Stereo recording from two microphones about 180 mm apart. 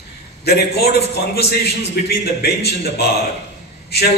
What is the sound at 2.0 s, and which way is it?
Speech, 65° left (ahead or behind).